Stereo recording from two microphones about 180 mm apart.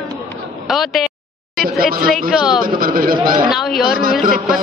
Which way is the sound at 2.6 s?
55° right (ahead or behind).